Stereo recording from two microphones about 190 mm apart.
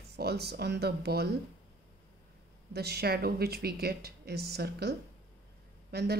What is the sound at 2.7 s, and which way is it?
Speech, 55° right (ahead or behind).